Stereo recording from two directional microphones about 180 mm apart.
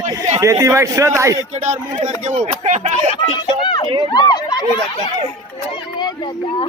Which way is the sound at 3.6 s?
30° left (ahead or behind).